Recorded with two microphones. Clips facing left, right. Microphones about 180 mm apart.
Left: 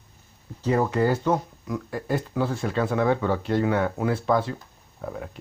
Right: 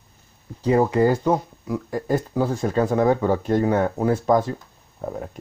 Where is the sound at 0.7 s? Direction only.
20° right (ahead or behind).